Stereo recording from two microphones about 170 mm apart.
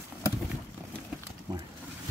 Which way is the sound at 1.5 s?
20° right (ahead or behind).